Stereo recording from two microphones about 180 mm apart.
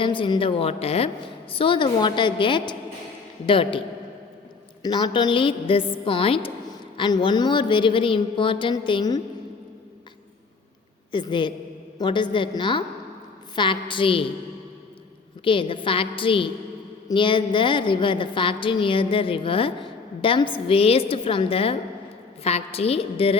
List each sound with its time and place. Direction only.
0.0 s a woman's voice: 30° left (ahead or behind)
11.1 s a woman's voice: 25° left (ahead or behind)
15.4 s a woman's voice: 30° left (ahead or behind)